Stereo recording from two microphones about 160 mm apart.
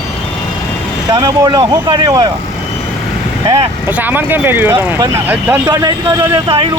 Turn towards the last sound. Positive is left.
turn(degrees=-30)  # may be behind; listen again after turning